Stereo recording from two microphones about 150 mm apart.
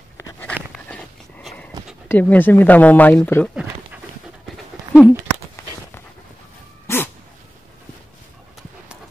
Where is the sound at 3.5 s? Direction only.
5° right (ahead or behind).